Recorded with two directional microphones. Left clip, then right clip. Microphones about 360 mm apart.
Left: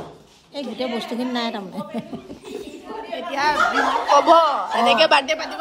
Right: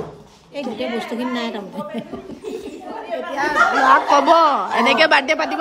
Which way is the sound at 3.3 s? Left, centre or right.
Centre.